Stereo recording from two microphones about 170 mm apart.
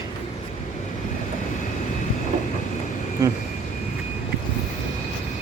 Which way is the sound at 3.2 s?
20° right (ahead or behind).